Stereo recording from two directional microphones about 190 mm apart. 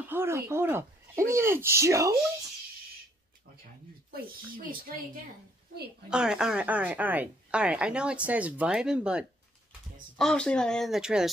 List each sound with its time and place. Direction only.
0.1 s speech: 15° right (ahead or behind)
6.0 s a woman's voice: 5° right (ahead or behind)